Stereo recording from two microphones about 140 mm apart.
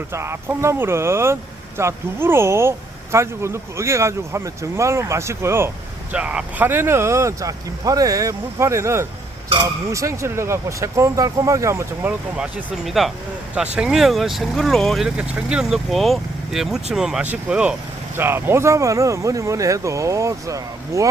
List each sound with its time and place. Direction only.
0.1 s speech: 20° right (ahead or behind)
12.4 s speech: 5° right (ahead or behind); by 21.1 s 20° right (ahead or behind)